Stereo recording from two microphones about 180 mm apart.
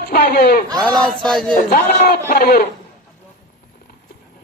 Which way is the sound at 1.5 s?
50° left (ahead or behind).